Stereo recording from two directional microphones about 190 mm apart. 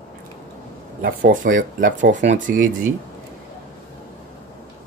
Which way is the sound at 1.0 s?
45° right (ahead or behind).